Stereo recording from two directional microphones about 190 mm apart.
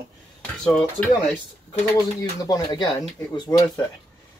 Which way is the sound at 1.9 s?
20° left (ahead or behind).